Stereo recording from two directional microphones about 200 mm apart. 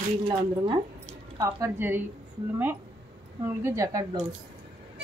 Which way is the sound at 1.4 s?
10° right (ahead or behind).